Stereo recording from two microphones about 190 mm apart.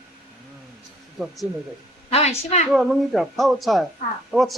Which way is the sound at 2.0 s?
35° left (ahead or behind).